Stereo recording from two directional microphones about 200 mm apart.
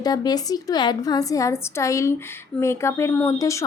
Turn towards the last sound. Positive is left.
turn(degrees=15)  # may be behind; listen again after turning